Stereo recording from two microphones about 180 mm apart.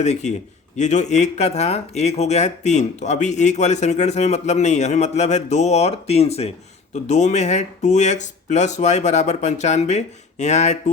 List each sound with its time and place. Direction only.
0.0 s speech: 40° left (ahead or behind)